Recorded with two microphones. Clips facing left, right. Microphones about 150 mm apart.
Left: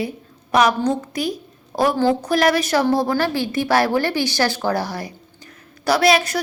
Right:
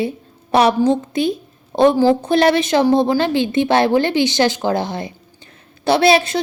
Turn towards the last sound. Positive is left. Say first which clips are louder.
# right 3 dB
turn(degrees=-25)  # may be behind; listen again after turning